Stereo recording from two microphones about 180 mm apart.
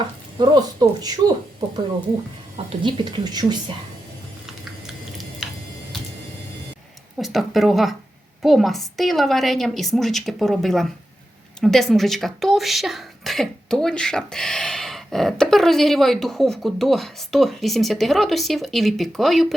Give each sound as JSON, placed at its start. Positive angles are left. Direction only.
{"t": 0.3, "sound": "a woman's voice", "side_deg": -25}
{"t": 2.6, "sound": "a woman's voice", "side_deg": -30}
{"t": 7.2, "sound": "speech", "side_deg": 0}